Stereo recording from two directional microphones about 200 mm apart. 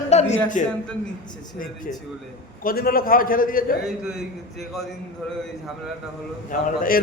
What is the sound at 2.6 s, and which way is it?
A man's voice, 45° left (ahead or behind).